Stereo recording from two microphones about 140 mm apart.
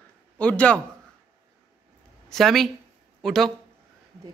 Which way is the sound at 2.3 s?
Centre (ahead or behind).